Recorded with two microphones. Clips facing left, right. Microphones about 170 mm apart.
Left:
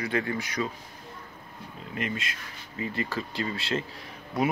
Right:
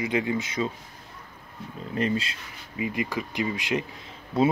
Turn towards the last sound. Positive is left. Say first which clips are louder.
# right 5 dB
turn(degrees=-25)  # may be behind; listen again after turning